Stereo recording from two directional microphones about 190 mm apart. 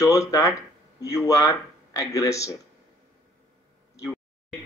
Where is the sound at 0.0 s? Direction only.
15° left (ahead or behind).